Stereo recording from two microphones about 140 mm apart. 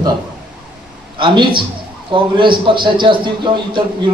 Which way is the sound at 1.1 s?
35° right (ahead or behind).